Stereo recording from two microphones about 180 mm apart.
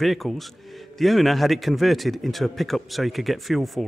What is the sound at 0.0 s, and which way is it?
A man's voice, centre (ahead or behind).